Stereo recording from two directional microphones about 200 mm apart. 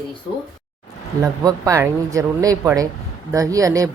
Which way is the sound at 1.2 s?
20° right (ahead or behind).